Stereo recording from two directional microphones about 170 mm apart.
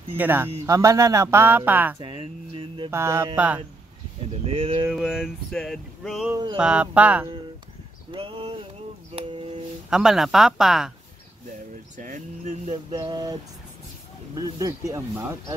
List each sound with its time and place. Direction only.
0.2 s speech: 10° right (ahead or behind)
2.0 s a sound: 30° right (ahead or behind)
2.9 s speech: 15° right (ahead or behind)
4.5 s speech: 35° right (ahead or behind)
4.9 s music: 5° right (ahead or behind)
6.3 s a sound: 25° right (ahead or behind)
6.6 s speech: 5° right (ahead or behind)
8.1 s a sound: 30° right (ahead or behind)
9.8 s music: centre (ahead or behind)
12.0 s speech: 50° right (ahead or behind)
12.9 s a sound: 25° right (ahead or behind)
14.3 s speech: 20° right (ahead or behind)